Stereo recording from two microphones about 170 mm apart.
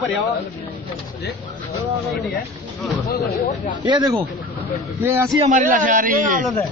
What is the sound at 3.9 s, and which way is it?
A man's voice, 20° right (ahead or behind).